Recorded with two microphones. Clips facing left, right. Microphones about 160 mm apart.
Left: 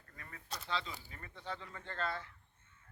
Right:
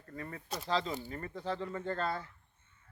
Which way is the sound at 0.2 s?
35° right (ahead or behind).